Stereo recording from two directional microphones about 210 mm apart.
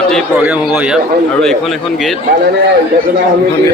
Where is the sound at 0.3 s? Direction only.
10° right (ahead or behind).